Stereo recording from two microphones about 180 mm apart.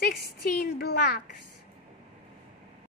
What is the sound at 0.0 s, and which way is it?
A woman's voice, 60° left (ahead or behind).